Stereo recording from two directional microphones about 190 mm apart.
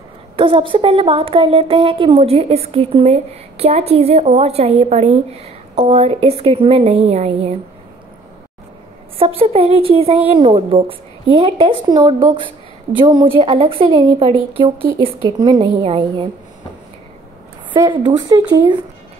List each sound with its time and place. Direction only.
0.4 s speech: 30° right (ahead or behind)
9.4 s a woman's voice: 30° right (ahead or behind)
17.7 s a woman's voice: 25° right (ahead or behind)